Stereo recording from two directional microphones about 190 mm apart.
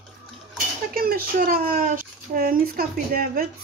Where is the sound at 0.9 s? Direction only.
50° right (ahead or behind).